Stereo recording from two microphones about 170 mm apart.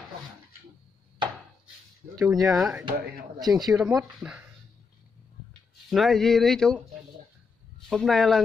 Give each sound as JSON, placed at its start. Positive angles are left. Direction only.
{"t": 2.1, "sound": "speech", "side_deg": -20}
{"t": 2.5, "sound": "speech", "side_deg": -5}
{"t": 3.3, "sound": "speech", "side_deg": -20}
{"t": 3.7, "sound": "speech", "side_deg": 0}
{"t": 5.9, "sound": "speech", "side_deg": 0}
{"t": 7.9, "sound": "speech", "side_deg": 0}